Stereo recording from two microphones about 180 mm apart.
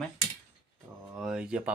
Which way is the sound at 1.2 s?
5° right (ahead or behind).